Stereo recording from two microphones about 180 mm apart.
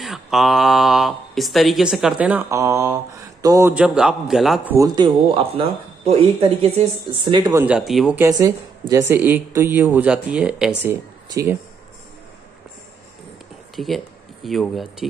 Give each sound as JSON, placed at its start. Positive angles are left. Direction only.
{"t": 0.0, "sound": "speech", "side_deg": 0}
{"t": 4.7, "sound": "speech", "side_deg": -20}
{"t": 7.6, "sound": "speech", "side_deg": -5}
{"t": 8.2, "sound": "speech", "side_deg": -20}
{"t": 13.7, "sound": "speech", "side_deg": 0}